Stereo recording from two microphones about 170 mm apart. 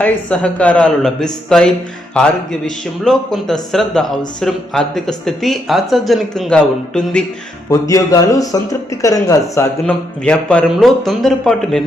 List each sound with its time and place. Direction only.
0.0 s speech: 10° left (ahead or behind)
7.7 s a man's voice: 20° left (ahead or behind)
10.2 s speech: 5° left (ahead or behind)